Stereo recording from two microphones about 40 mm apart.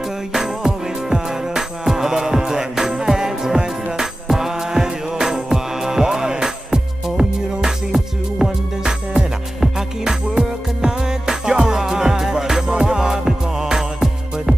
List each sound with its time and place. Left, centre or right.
0.3 s music: centre